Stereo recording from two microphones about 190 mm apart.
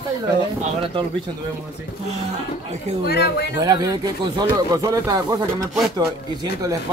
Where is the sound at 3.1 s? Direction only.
60° left (ahead or behind).